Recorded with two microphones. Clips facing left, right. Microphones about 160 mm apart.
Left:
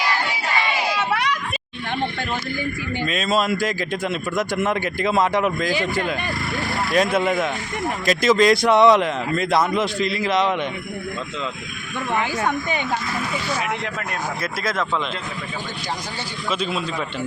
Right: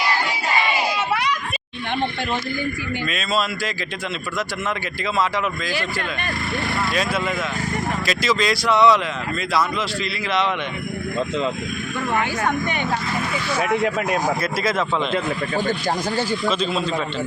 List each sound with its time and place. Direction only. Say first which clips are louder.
3.1 s a man's voice: left 4 dB; 45° left (ahead or behind)
6.9 s a man's voice: left 9 dB; 50° left (ahead or behind)
14.4 s speech: right 3 dB; centre (ahead or behind)
15.1 s speech: right 8 dB; 50° right (ahead or behind)
16.5 s a man's voice: right 2 dB; 10° left (ahead or behind)